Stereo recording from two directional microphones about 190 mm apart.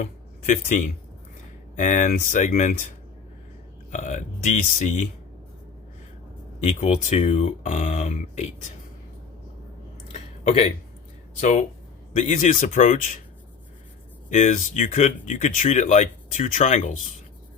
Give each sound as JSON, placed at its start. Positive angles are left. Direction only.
{"t": 0.0, "sound": "speech", "side_deg": 40}
{"t": 3.9, "sound": "speech", "side_deg": 40}
{"t": 6.6, "sound": "speech", "side_deg": 35}
{"t": 10.1, "sound": "a sound", "side_deg": 35}
{"t": 11.3, "sound": "speech", "side_deg": 40}
{"t": 14.3, "sound": "speech", "side_deg": 40}